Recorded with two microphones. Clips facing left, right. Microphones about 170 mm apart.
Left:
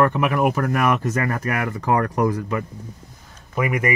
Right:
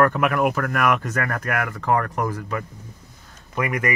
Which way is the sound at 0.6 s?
20° left (ahead or behind).